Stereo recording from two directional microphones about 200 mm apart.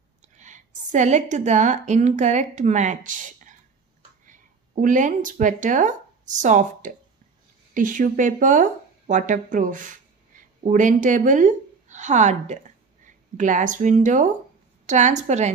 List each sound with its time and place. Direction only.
0.2 s a woman's voice: 35° right (ahead or behind)